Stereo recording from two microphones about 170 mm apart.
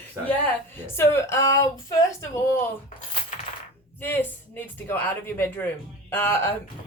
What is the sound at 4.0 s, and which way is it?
Speech, 10° left (ahead or behind).